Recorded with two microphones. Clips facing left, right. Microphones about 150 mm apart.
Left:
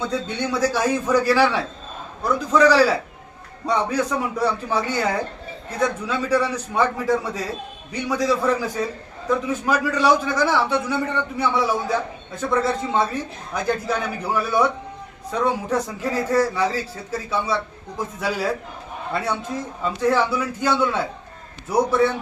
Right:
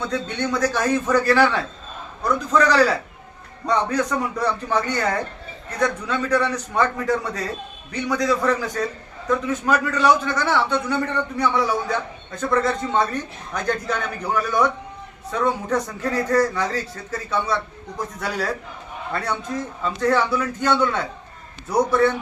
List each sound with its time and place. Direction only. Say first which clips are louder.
0.0 s a man's voice: even; 10° left (ahead or behind)